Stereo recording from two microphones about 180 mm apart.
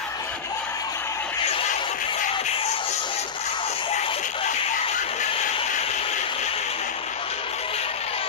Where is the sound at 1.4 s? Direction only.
35° left (ahead or behind).